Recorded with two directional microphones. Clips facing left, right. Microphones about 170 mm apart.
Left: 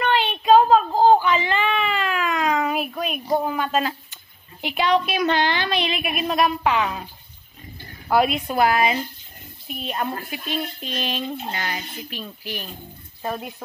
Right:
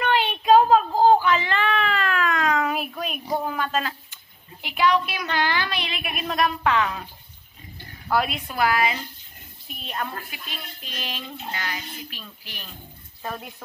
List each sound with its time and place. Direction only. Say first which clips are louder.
0.0 s a sound: left 1 dB; 10° right (ahead or behind); by 3.9 s 10° left (ahead or behind)
4.6 s a woman's voice: left 1 dB; 25° left (ahead or behind)
8.1 s a woman's voice: left 5 dB; 20° left (ahead or behind)